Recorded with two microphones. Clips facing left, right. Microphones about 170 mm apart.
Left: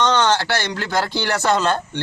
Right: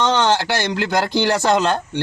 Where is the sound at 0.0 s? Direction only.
10° right (ahead or behind).